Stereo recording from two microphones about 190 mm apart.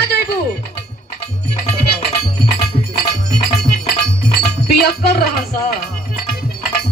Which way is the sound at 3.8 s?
55° left (ahead or behind).